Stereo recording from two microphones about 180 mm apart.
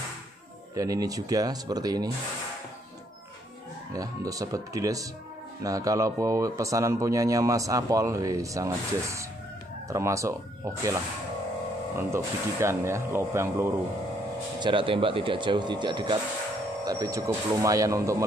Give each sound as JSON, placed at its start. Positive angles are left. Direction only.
{"t": 0.7, "sound": "speech", "side_deg": -20}
{"t": 3.9, "sound": "speech", "side_deg": -20}
{"t": 12.1, "sound": "speech", "side_deg": -15}
{"t": 14.6, "sound": "speech", "side_deg": -30}